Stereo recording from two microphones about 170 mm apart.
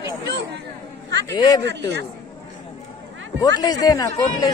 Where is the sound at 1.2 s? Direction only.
20° left (ahead or behind).